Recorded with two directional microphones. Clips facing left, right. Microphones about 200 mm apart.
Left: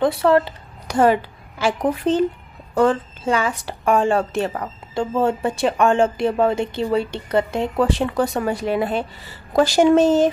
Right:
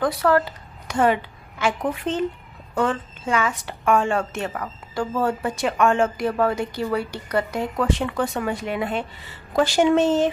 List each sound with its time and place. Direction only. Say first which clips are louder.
0.0 s a woman's voice: left 3 dB; 25° left (ahead or behind)